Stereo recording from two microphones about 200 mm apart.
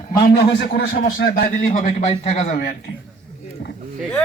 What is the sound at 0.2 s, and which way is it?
A man's voice, 50° left (ahead or behind).